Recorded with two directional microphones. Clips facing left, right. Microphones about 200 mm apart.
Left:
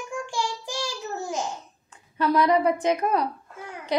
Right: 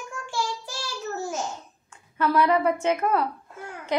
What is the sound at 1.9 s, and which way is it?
A woman's voice, 15° left (ahead or behind).